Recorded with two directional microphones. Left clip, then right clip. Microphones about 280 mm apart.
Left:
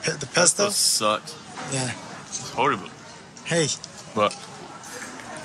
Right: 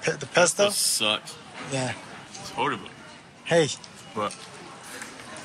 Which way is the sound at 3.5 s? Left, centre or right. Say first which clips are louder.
Right 2 dB; centre.